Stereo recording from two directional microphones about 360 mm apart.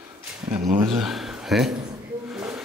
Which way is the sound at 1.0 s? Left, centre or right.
Centre.